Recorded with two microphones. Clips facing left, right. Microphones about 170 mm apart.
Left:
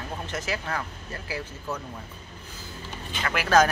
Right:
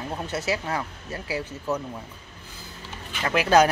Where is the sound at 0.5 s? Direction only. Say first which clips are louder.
Right 3 dB; 15° right (ahead or behind).